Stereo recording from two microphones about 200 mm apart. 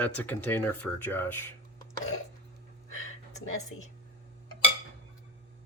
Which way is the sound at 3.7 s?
90° left.